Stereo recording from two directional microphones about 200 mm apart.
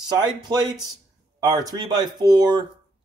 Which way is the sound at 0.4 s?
20° right (ahead or behind).